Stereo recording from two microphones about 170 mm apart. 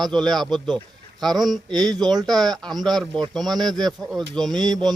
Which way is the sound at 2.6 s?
Centre (ahead or behind).